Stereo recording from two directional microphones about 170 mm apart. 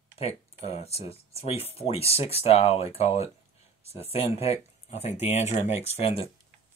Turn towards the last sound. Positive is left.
turn(degrees=35)  # may be behind; listen again after turning